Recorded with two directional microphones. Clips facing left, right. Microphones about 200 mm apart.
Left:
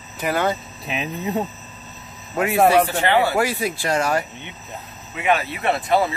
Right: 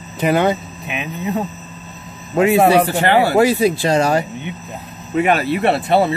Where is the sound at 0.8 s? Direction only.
30° left (ahead or behind).